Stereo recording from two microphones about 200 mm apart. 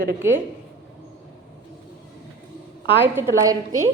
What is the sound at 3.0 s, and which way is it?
Speech, 10° right (ahead or behind).